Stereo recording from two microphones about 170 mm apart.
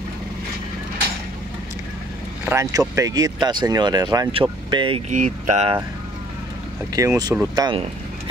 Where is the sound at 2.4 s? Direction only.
20° right (ahead or behind).